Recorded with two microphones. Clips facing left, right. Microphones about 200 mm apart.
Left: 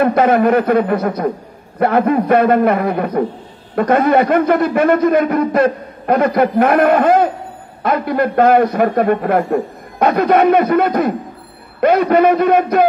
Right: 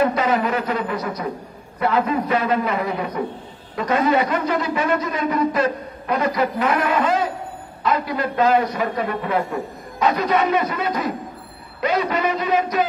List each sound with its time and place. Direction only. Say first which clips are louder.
0.0 s a man's voice: left 7 dB; 60° left (ahead or behind)